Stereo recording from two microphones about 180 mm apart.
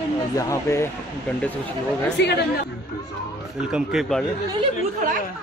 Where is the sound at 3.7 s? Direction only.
5° right (ahead or behind).